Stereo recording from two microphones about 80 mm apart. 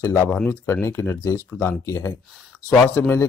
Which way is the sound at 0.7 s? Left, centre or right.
Left.